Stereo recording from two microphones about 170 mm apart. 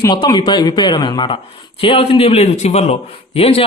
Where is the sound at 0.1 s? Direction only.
25° left (ahead or behind).